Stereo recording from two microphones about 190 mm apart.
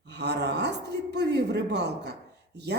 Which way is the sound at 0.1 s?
60° right (ahead or behind).